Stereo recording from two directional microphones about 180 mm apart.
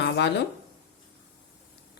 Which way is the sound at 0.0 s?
70° left (ahead or behind).